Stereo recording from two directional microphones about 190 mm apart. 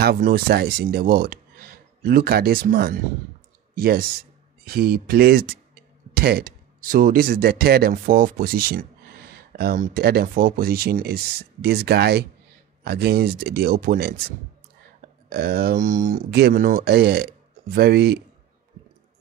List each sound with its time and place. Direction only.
0.0 s speech: 55° right (ahead or behind)
15.2 s speech: 55° right (ahead or behind)
16.3 s speech: 60° right (ahead or behind)